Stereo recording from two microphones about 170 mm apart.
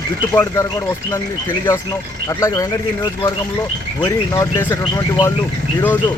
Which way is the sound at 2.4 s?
20° left (ahead or behind).